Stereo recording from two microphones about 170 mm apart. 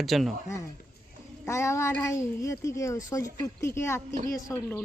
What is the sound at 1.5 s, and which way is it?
Speech, 15° left (ahead or behind).